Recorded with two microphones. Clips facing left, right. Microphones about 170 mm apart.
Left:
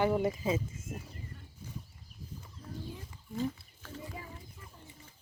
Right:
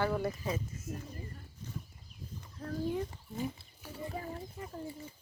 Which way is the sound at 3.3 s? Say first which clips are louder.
Left 3 dB; 10° right (ahead or behind).